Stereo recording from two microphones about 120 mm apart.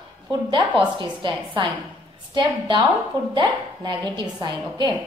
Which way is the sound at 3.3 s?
40° right (ahead or behind).